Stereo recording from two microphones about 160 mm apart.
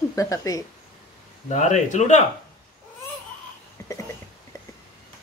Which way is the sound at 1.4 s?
50° left (ahead or behind).